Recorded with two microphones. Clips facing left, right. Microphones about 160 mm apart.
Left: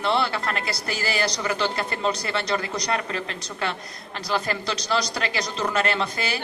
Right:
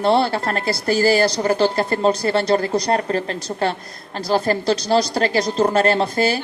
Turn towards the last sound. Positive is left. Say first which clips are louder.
# right 8 dB
turn(degrees=-35)  # may be behind; listen again after turning